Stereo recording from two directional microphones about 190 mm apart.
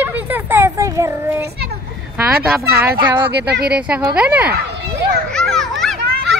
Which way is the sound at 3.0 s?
25° right (ahead or behind).